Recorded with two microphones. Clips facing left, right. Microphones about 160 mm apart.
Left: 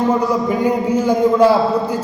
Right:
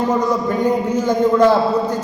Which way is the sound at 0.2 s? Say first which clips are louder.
Left 1 dB; 10° left (ahead or behind).